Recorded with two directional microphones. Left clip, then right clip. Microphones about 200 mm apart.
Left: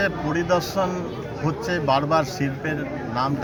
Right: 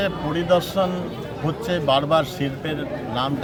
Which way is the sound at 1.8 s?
5° right (ahead or behind).